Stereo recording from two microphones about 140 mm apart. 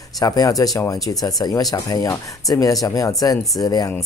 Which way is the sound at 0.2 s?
25° left (ahead or behind).